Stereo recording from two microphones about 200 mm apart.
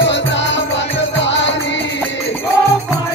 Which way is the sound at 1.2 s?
65° left (ahead or behind).